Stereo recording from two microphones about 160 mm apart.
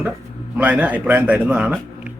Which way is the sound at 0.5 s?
10° right (ahead or behind).